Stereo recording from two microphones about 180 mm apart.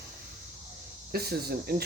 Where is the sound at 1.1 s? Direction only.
60° right (ahead or behind).